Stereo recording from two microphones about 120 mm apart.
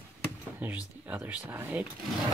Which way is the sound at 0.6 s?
15° right (ahead or behind).